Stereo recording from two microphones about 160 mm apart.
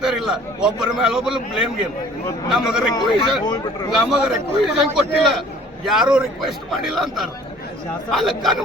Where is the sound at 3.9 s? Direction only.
5° right (ahead or behind).